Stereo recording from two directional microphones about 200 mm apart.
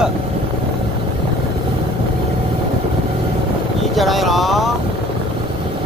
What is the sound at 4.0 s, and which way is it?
Speech, centre (ahead or behind).